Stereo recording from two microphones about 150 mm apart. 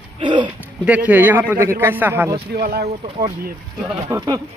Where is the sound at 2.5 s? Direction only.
90° right.